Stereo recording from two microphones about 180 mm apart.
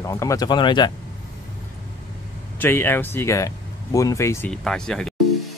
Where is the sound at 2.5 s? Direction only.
10° left (ahead or behind).